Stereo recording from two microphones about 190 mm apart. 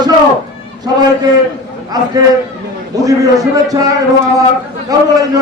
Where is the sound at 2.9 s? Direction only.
20° right (ahead or behind).